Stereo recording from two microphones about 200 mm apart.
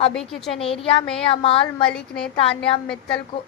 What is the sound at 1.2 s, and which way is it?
Speech, 25° left (ahead or behind).